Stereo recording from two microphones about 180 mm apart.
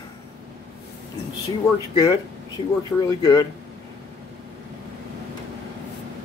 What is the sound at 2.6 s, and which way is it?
Speech, 35° left (ahead or behind).